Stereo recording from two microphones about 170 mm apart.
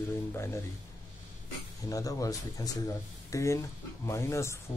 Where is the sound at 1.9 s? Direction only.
20° left (ahead or behind).